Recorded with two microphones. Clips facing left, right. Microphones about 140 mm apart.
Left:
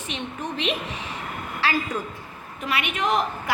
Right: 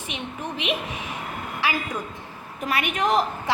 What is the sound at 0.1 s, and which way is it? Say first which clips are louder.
Speech: left 1 dB; 15° right (ahead or behind).